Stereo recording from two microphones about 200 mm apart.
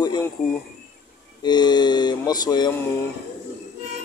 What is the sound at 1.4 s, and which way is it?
A man's voice, 20° left (ahead or behind).